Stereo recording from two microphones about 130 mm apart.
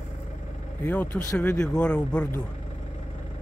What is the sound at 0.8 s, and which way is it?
Speech, 10° left (ahead or behind).